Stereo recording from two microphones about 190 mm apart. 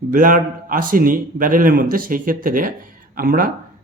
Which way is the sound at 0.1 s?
45° right (ahead or behind).